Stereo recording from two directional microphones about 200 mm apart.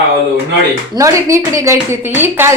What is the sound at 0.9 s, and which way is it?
A woman's voice, 15° right (ahead or behind).